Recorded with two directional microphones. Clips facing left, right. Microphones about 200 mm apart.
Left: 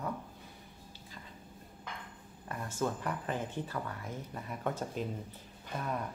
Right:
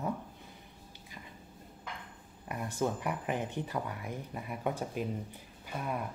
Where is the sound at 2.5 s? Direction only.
15° right (ahead or behind).